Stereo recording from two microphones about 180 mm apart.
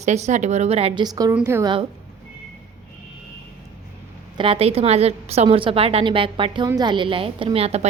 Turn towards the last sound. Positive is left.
turn(degrees=-35)  # may be behind; listen again after turning